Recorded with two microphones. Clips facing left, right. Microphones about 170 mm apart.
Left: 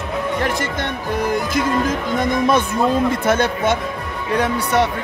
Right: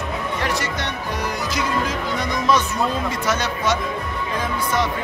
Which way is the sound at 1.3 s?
50° left (ahead or behind).